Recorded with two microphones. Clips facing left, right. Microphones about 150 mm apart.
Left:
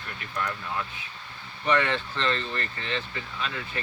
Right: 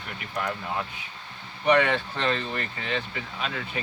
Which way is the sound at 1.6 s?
15° right (ahead or behind).